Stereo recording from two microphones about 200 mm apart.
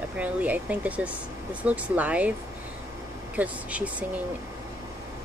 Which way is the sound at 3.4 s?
5° right (ahead or behind).